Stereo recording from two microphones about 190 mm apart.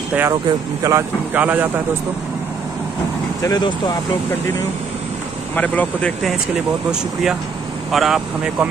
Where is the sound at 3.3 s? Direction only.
20° left (ahead or behind).